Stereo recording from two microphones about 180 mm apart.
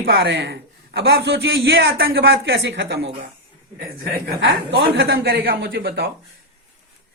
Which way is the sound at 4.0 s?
65° right (ahead or behind).